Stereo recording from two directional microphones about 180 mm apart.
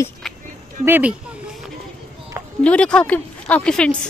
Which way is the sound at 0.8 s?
10° right (ahead or behind).